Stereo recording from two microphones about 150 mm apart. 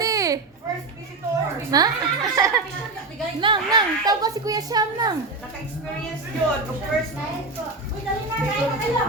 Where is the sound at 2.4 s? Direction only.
20° right (ahead or behind).